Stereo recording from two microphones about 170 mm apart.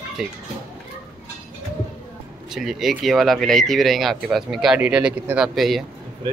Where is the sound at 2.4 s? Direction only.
Centre (ahead or behind).